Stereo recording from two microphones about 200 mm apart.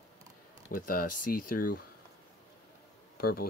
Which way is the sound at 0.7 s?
45° left (ahead or behind).